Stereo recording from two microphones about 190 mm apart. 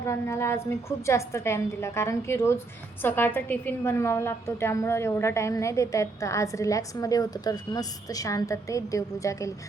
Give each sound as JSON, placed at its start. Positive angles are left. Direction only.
{"t": 0.0, "sound": "a woman's voice", "side_deg": 15}